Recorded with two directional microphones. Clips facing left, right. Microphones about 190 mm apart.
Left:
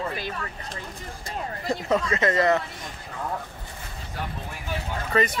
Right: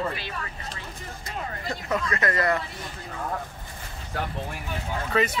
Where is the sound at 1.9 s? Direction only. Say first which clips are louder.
Left 3 dB; 25° left (ahead or behind).